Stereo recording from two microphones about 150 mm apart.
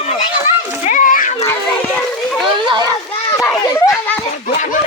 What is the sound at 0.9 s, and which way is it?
Children playing, 60° left (ahead or behind).